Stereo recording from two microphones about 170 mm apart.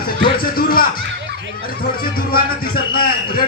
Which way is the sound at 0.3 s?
60° left (ahead or behind).